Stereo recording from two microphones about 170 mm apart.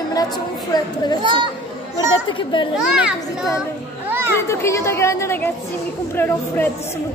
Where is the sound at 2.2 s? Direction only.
30° left (ahead or behind).